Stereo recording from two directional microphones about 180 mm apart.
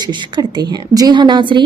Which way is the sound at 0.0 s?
25° right (ahead or behind).